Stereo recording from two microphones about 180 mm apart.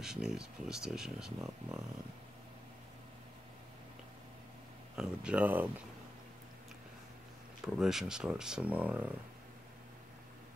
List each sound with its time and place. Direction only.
0.0 s speech: 5° right (ahead or behind)
4.9 s speech: 5° right (ahead or behind)
7.6 s speech: centre (ahead or behind)